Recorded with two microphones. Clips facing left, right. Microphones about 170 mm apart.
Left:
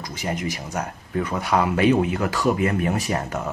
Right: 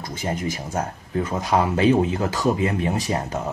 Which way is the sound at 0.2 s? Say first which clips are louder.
Right 1 dB; 30° right (ahead or behind).